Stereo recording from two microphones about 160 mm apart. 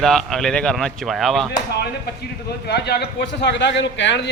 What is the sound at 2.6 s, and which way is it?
A man's voice, 90° left.